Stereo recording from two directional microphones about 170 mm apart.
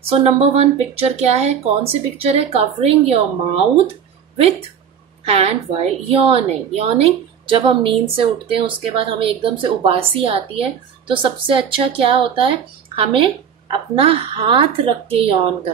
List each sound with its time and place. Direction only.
0.1 s a woman's voice: 35° right (ahead or behind)
5.2 s a woman's voice: 35° right (ahead or behind)